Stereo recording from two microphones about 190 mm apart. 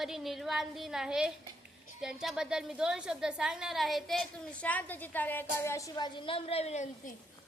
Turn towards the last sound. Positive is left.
turn(degrees=35)  # may be behind; listen again after turning